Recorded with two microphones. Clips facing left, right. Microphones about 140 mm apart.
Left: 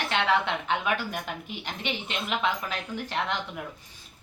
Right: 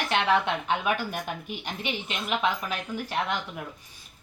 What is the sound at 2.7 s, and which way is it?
Speech, 15° right (ahead or behind).